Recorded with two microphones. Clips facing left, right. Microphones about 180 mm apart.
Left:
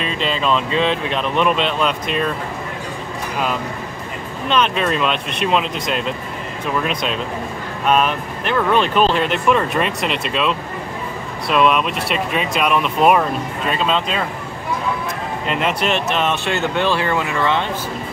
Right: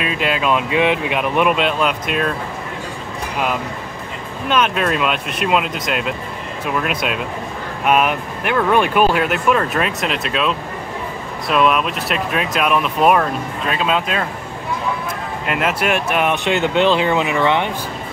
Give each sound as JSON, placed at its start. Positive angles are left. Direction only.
{"t": 0.0, "sound": "speech", "side_deg": -10}
{"t": 4.5, "sound": "speech", "side_deg": -5}
{"t": 15.4, "sound": "speech", "side_deg": -5}